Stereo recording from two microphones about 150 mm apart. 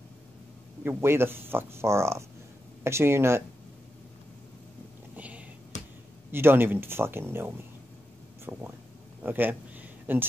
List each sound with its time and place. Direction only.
0.8 s speech: 15° right (ahead or behind)
5.1 s whispering: 10° right (ahead or behind)
6.3 s speech: 15° right (ahead or behind)
9.2 s a sound: 10° right (ahead or behind)